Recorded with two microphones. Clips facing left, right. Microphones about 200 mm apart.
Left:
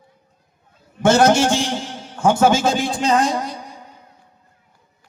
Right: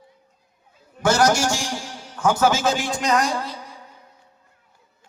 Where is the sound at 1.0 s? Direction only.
20° left (ahead or behind).